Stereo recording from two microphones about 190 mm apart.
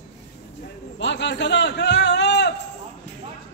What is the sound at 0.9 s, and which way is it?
A man's voice, 70° left (ahead or behind).